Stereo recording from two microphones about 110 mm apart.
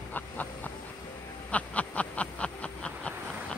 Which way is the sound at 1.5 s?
10° left (ahead or behind).